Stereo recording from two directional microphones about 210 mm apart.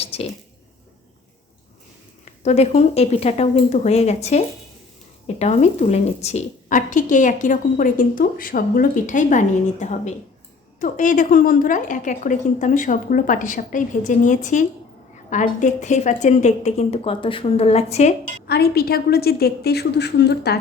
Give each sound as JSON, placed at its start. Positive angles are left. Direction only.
{"t": 0.0, "sound": "a sound", "side_deg": 30}
{"t": 2.4, "sound": "a woman's voice", "side_deg": 30}
{"t": 18.4, "sound": "a woman's voice", "side_deg": 50}